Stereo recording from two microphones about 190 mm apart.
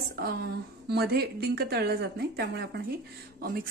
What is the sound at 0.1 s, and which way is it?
A woman's voice, 55° right (ahead or behind).